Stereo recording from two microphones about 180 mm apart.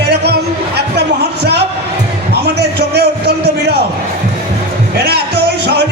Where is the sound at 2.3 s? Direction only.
65° right (ahead or behind).